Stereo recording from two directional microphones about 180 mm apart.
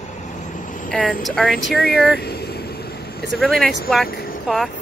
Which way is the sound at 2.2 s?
60° left (ahead or behind).